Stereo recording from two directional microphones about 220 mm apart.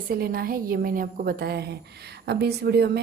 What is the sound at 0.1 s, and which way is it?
A woman's voice, 45° right (ahead or behind).